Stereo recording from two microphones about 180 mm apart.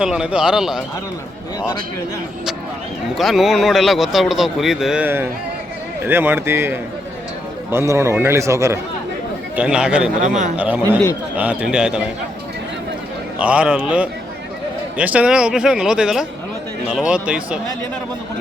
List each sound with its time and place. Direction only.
0.0 s a man's voice: 5° right (ahead or behind)
3.2 s a man's voice: centre (ahead or behind)
9.6 s a man's voice: 5° right (ahead or behind)
10.2 s speech: 45° right (ahead or behind)
10.6 s a man's voice: 10° right (ahead or behind)
13.4 s a man's voice: 5° right (ahead or behind)